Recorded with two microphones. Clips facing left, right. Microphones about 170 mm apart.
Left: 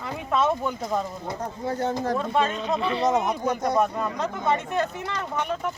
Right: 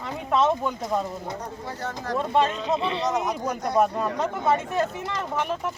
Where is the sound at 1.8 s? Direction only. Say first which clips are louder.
Left 6 dB; 25° left (ahead or behind).